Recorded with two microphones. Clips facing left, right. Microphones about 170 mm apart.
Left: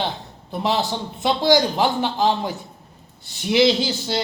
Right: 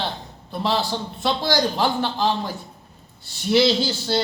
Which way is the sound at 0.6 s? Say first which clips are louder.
Left 1 dB; 20° left (ahead or behind).